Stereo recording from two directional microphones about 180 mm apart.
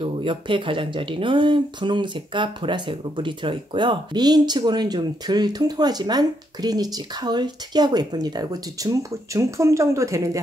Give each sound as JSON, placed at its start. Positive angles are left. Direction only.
{"t": 0.0, "sound": "speech", "side_deg": -30}